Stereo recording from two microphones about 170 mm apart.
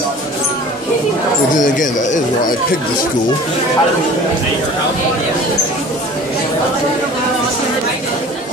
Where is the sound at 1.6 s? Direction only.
50° left (ahead or behind).